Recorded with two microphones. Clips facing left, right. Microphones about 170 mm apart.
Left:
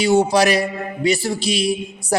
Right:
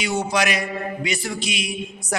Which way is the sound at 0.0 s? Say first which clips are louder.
Left 8 dB; 30° left (ahead or behind).